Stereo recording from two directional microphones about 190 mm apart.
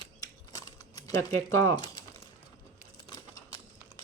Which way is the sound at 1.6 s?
20° left (ahead or behind).